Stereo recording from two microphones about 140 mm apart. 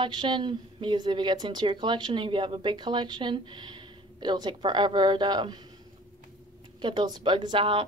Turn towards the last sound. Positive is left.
turn(degrees=-35)  # may be behind; listen again after turning